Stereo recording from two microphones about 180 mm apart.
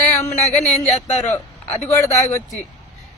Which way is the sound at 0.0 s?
40° left (ahead or behind).